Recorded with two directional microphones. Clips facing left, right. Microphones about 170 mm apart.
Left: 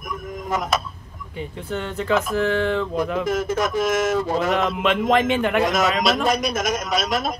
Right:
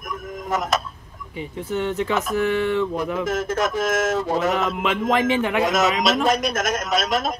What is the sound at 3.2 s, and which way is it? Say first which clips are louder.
Speech: right 1 dB; 10° left (ahead or behind).